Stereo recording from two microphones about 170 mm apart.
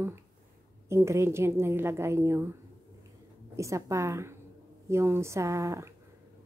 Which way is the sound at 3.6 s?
20° right (ahead or behind).